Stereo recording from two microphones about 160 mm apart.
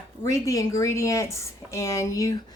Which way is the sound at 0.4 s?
20° left (ahead or behind).